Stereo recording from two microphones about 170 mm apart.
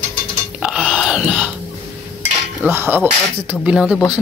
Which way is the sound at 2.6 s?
10° right (ahead or behind).